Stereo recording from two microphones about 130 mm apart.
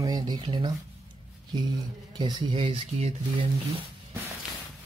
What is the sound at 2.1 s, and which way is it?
Speech, 40° right (ahead or behind).